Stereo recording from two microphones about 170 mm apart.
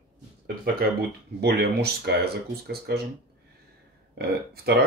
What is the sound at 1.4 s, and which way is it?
Speech, 70° right (ahead or behind).